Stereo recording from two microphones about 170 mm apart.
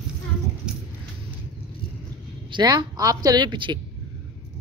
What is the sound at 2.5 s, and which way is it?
Speech, 25° right (ahead or behind).